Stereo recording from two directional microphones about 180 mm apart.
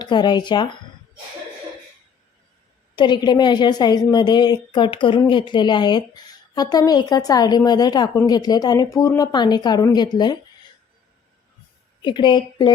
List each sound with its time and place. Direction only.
0.0 s a woman's voice: 25° left (ahead or behind)
2.9 s a woman's voice: 25° left (ahead or behind)
12.0 s a woman's voice: 25° left (ahead or behind)